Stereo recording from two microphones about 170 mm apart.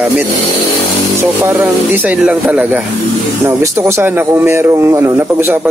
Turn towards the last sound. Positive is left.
turn(degrees=-15)  # may be behind; listen again after turning